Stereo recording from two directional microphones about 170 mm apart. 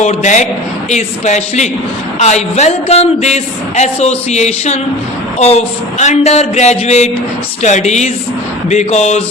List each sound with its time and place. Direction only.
0.0 s a man's voice: 45° left (ahead or behind)